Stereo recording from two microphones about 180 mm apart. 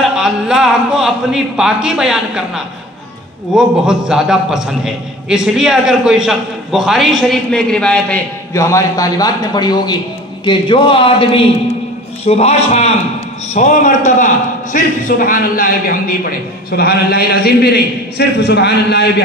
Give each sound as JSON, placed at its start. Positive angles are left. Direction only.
{"t": 0.1, "sound": "a man's voice", "side_deg": -5}
{"t": 8.5, "sound": "a man's voice", "side_deg": 15}